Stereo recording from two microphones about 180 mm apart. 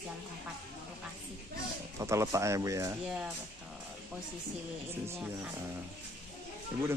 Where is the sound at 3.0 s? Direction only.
5° right (ahead or behind).